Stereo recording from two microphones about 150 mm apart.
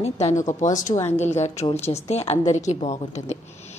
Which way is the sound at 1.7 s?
45° left (ahead or behind).